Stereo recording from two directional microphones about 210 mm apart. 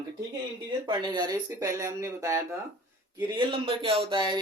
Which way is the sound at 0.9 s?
20° right (ahead or behind).